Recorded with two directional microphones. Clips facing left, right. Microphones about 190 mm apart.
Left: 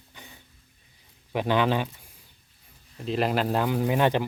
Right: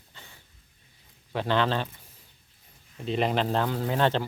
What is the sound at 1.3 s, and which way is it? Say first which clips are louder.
Speech: left 2 dB; 15° left (ahead or behind).